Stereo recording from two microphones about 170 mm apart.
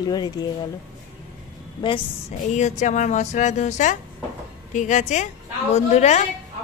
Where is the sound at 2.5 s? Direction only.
45° left (ahead or behind).